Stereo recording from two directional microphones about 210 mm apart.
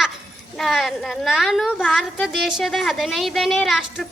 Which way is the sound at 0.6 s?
Centre (ahead or behind).